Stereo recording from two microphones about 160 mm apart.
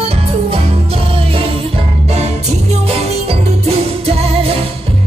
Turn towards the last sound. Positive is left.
turn(degrees=-40)  # may be behind; listen again after turning